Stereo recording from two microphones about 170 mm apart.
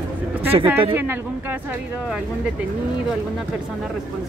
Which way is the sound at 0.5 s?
25° right (ahead or behind).